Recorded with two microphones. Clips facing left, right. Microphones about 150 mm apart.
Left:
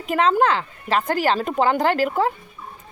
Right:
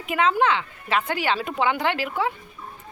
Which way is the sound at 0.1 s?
35° left (ahead or behind).